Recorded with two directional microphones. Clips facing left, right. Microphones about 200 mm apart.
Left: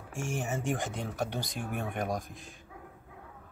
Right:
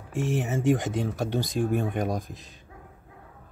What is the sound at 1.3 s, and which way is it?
Speech, 25° right (ahead or behind).